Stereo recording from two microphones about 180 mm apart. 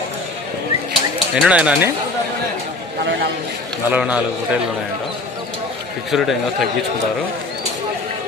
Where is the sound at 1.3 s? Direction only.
5° right (ahead or behind).